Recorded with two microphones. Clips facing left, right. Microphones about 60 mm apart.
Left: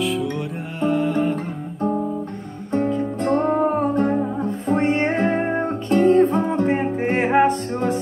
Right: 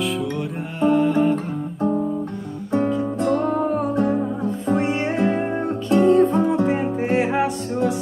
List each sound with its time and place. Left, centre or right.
0.0 s music: centre
2.9 s music: left